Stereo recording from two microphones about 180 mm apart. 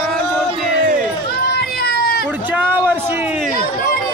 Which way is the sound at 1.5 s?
60° left (ahead or behind).